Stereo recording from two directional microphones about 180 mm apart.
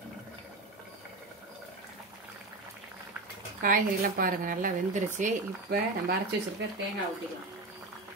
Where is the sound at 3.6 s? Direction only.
50° right (ahead or behind).